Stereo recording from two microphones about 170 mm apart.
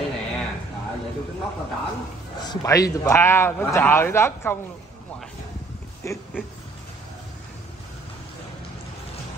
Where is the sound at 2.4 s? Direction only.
25° left (ahead or behind).